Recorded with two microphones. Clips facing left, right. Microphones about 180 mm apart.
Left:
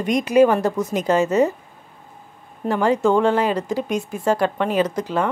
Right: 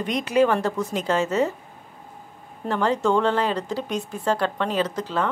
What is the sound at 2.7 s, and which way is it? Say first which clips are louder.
A woman's voice: left 4 dB; 10° left (ahead or behind).